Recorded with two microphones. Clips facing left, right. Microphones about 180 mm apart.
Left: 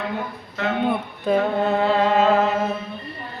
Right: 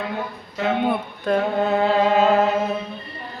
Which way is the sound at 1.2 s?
Centre (ahead or behind).